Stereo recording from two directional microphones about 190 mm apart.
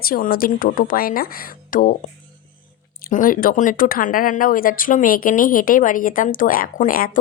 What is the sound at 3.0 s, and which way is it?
Speech, 45° left (ahead or behind).